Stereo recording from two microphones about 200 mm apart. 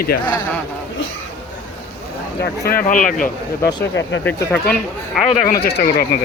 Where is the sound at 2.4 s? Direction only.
50° left (ahead or behind).